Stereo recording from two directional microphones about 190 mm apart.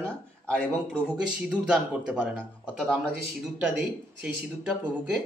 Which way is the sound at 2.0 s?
5° right (ahead or behind).